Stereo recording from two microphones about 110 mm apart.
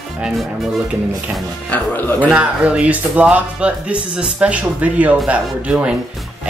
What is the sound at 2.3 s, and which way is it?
Speech, 10° right (ahead or behind).